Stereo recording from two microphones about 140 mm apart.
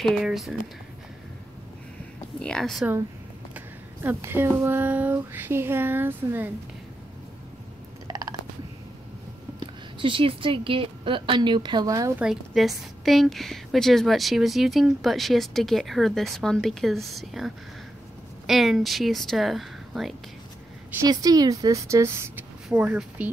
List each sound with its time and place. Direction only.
0.0 s a woman's voice: centre (ahead or behind)
2.4 s a woman's voice: 5° left (ahead or behind)
3.5 s speech: 15° right (ahead or behind)
8.1 s a sound: 25° right (ahead or behind)
9.9 s a woman's voice: 35° right (ahead or behind)
12.2 s a woman's voice: 5° right (ahead or behind)
18.5 s a woman's voice: centre (ahead or behind)
21.1 s speech: 30° right (ahead or behind); by 23.3 s 10° right (ahead or behind)